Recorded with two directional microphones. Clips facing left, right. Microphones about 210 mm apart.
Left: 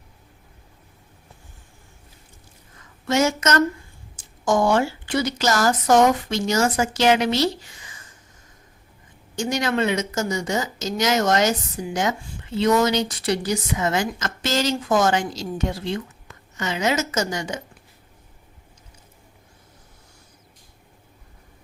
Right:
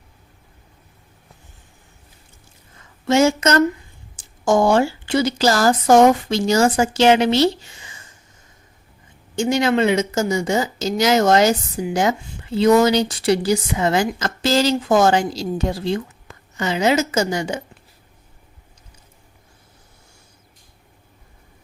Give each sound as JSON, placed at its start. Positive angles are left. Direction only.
{"t": 3.1, "sound": "speech", "side_deg": -30}
{"t": 9.3, "sound": "speech", "side_deg": -25}